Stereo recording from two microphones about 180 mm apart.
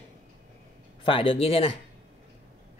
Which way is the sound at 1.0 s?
30° left (ahead or behind).